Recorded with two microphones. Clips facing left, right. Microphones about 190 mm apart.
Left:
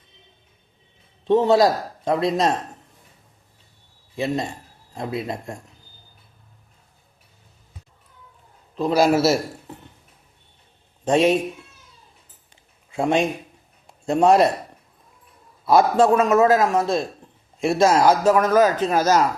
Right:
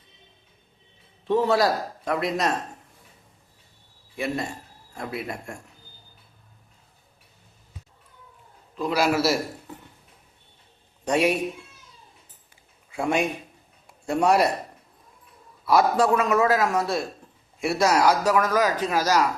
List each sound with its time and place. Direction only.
1.3 s a man's voice: 20° left (ahead or behind)
4.1 s a man's voice: 25° left (ahead or behind)
8.7 s a man's voice: 25° left (ahead or behind)
11.0 s a man's voice: 25° left (ahead or behind)
12.9 s a man's voice: 25° left (ahead or behind)
15.6 s a man's voice: 25° left (ahead or behind)